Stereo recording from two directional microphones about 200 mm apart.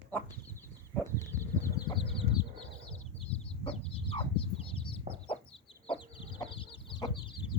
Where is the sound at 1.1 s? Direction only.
15° left (ahead or behind).